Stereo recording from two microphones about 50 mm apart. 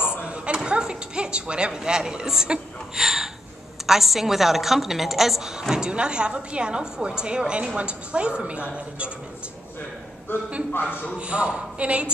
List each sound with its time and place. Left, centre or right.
0.7 s a woman's voice: centre
10.3 s a man's voice: left
11.1 s a woman's voice: right